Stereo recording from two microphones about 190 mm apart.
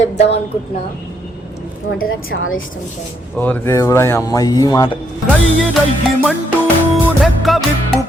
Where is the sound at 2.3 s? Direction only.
65° left (ahead or behind).